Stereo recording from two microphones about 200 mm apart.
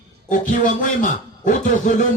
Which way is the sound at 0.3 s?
40° left (ahead or behind).